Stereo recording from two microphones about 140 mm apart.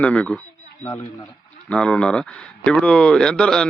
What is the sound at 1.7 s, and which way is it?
Speech, 5° left (ahead or behind).